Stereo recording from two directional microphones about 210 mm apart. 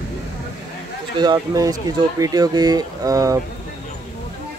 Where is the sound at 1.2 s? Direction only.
20° right (ahead or behind).